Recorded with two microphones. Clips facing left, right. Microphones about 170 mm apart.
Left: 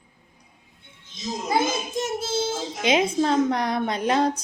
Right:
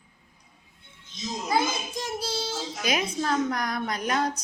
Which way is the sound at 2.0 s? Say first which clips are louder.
Left 7 dB; 25° left (ahead or behind).